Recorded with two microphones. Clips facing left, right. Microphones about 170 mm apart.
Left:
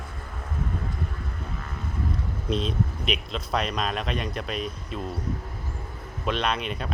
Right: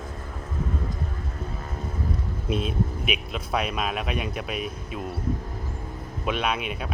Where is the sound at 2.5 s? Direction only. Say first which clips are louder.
Even; 10° right (ahead or behind).